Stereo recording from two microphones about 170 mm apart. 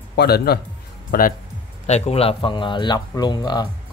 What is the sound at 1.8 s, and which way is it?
Speech, 40° left (ahead or behind).